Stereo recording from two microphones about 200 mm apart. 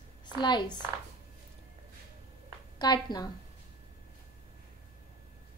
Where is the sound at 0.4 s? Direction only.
20° left (ahead or behind).